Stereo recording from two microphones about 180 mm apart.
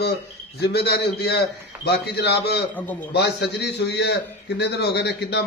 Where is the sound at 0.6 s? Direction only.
65° left (ahead or behind).